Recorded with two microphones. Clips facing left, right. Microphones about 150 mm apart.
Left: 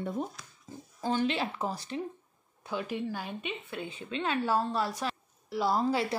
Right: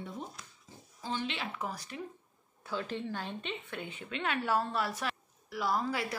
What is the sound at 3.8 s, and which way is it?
A woman's voice, 30° left (ahead or behind).